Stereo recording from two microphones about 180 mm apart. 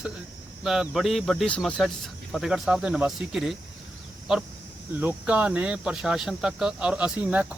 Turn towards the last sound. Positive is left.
turn(degrees=-5)  # may be behind; listen again after turning